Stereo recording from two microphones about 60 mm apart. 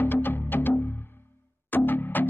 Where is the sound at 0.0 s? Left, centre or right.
Left.